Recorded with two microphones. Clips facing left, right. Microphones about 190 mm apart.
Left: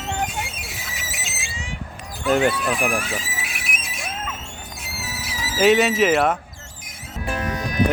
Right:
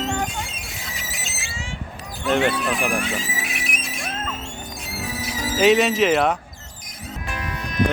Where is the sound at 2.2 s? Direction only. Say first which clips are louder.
Left 1 dB; centre (ahead or behind).